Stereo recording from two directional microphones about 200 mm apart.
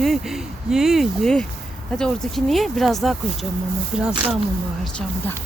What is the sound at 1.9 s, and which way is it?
Speech, 5° left (ahead or behind).